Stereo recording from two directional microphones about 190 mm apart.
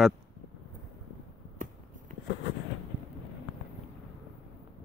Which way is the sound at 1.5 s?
45° right (ahead or behind).